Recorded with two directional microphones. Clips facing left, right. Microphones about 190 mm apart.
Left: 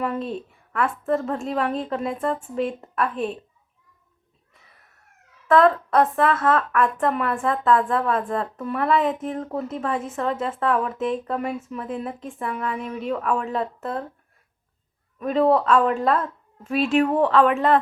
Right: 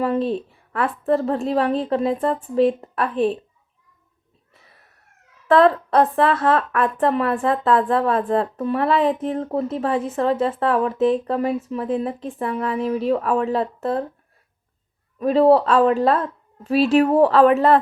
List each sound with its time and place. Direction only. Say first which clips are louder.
0.0 s a woman's voice: right 6 dB; 30° right (ahead or behind)
5.5 s a woman's voice: right 2 dB; 30° right (ahead or behind)
15.2 s a woman's voice: right 5 dB; 30° right (ahead or behind)